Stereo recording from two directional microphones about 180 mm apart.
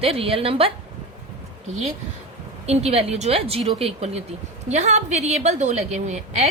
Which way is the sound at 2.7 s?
35° right (ahead or behind).